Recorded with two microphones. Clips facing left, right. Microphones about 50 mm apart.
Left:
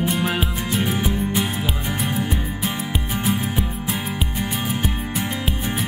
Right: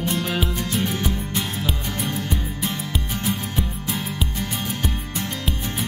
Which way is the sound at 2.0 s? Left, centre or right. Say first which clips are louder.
Left 2 dB; centre.